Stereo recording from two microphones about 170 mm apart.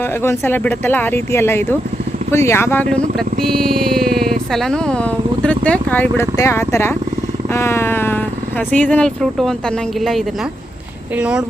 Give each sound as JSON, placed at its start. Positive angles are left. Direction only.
{"t": 0.2, "sound": "speech", "side_deg": 15}